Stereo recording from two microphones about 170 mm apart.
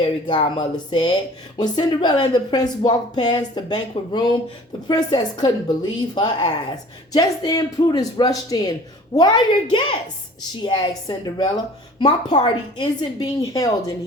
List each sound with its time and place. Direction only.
0.0 s a woman's voice: 25° left (ahead or behind)